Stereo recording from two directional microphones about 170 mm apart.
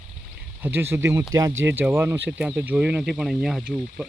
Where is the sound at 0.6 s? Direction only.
10° right (ahead or behind).